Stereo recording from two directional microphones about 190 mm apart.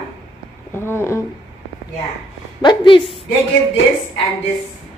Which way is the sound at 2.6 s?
25° left (ahead or behind).